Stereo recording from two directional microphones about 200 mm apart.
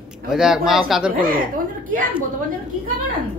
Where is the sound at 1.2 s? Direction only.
45° right (ahead or behind).